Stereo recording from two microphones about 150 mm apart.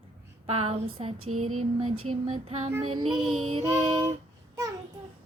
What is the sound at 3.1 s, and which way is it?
Music, centre (ahead or behind).